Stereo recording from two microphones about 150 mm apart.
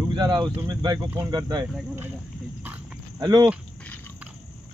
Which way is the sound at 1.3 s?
25° right (ahead or behind).